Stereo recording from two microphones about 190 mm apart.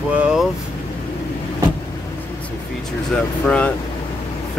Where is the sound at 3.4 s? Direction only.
5° left (ahead or behind).